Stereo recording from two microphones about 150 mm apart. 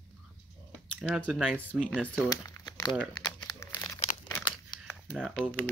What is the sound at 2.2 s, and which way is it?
Crumpling, 20° left (ahead or behind).